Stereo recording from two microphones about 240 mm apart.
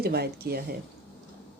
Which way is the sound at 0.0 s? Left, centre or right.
Right.